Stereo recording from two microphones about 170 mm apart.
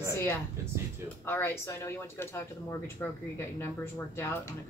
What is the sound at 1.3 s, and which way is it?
Speech, 15° left (ahead or behind).